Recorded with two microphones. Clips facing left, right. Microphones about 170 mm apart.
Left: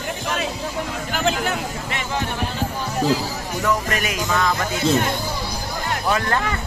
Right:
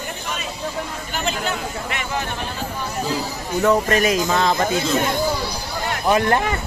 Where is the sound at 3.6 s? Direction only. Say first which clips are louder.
Right 6 dB; 35° right (ahead or behind).